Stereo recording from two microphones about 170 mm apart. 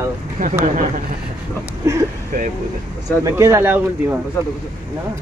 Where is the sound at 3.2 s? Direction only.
15° right (ahead or behind).